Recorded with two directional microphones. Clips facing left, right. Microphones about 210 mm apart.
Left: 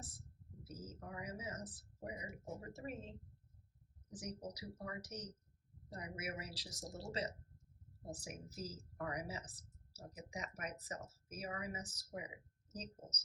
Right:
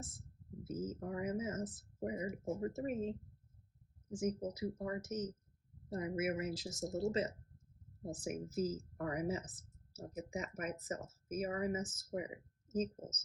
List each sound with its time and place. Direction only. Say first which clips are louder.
0.6 s speech: right 10 dB; 50° right (ahead or behind)
4.1 s speech: right 10 dB; 50° right (ahead or behind)